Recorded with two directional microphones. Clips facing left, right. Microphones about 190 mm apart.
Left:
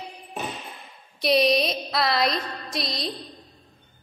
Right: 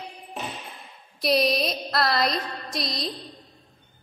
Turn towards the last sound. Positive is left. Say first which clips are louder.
# even
turn(degrees=0)  # may be behind; listen again after turning